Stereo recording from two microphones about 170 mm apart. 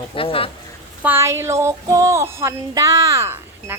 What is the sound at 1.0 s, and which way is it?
Speech, 15° right (ahead or behind).